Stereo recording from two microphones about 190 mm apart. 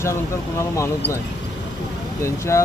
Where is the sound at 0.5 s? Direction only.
15° left (ahead or behind).